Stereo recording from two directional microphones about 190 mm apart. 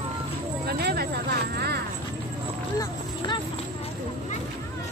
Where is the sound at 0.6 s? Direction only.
55° right (ahead or behind).